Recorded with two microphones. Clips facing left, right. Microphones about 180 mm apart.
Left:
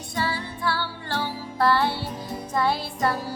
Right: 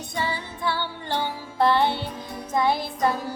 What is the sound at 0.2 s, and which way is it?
Music, 20° right (ahead or behind).